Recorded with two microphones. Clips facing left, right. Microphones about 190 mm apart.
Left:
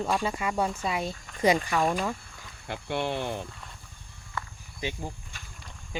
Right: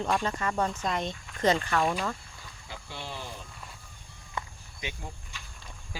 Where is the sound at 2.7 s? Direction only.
65° left (ahead or behind).